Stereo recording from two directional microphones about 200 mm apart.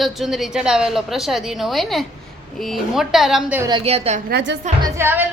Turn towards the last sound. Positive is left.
turn(degrees=-10)  # may be behind; listen again after turning